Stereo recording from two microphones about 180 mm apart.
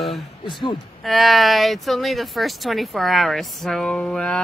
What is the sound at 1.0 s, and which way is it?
Speech, centre (ahead or behind).